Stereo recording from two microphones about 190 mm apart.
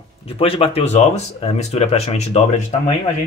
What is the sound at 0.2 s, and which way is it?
Speech, 30° left (ahead or behind).